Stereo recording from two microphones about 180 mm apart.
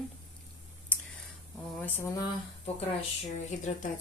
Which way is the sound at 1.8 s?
10° left (ahead or behind).